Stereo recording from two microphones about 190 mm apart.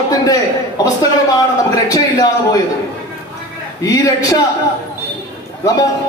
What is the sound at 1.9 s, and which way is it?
Speech, 20° left (ahead or behind).